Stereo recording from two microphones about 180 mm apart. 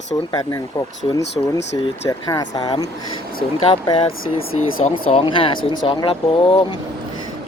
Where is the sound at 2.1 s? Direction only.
20° left (ahead or behind).